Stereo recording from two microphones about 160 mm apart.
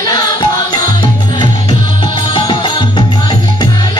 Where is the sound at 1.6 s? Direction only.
30° left (ahead or behind).